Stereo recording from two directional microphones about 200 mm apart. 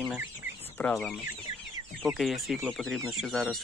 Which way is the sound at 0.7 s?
5° left (ahead or behind).